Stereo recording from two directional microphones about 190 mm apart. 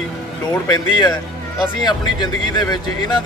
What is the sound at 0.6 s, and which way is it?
Speech, 20° left (ahead or behind).